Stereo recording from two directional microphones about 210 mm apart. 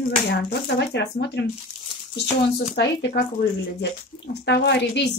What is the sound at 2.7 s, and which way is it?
Speech, 55° left (ahead or behind).